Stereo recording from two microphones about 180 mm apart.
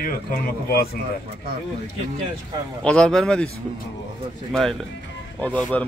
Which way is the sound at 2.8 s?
5° left (ahead or behind).